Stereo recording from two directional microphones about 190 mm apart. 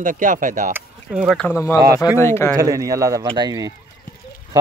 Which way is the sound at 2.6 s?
15° right (ahead or behind).